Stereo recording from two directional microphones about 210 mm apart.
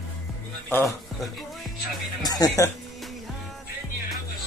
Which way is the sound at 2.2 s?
15° left (ahead or behind).